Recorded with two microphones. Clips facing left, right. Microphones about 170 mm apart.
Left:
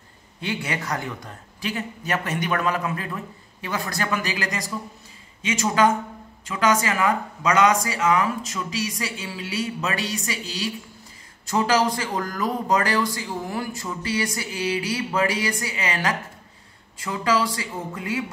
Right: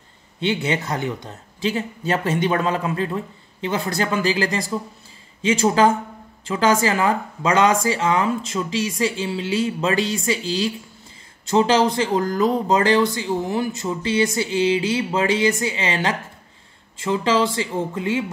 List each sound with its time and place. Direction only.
0.4 s speech: 25° right (ahead or behind)